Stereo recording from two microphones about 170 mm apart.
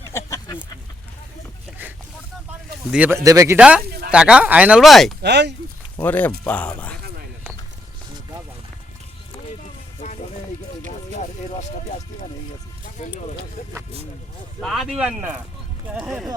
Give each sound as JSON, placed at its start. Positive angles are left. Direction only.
{"t": 0.1, "sound": "a sound", "side_deg": 15}
{"t": 2.9, "sound": "speech", "side_deg": -10}
{"t": 3.2, "sound": "speech", "side_deg": -20}
{"t": 3.8, "sound": "a sound", "side_deg": -65}
{"t": 4.1, "sound": "speech", "side_deg": -5}
{"t": 5.2, "sound": "speech", "side_deg": -80}
{"t": 6.0, "sound": "speech", "side_deg": 10}
{"t": 10.9, "sound": "music", "side_deg": 45}
{"t": 13.0, "sound": "speech", "side_deg": 45}
{"t": 14.6, "sound": "speech", "side_deg": 0}